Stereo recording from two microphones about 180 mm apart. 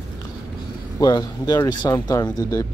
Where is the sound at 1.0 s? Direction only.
20° left (ahead or behind).